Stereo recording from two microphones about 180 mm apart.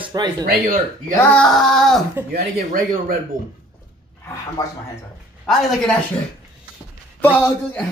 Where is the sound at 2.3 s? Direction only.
55° right (ahead or behind).